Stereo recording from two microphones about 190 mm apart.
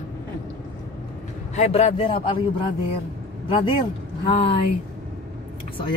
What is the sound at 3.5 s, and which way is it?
A man's voice, 25° left (ahead or behind).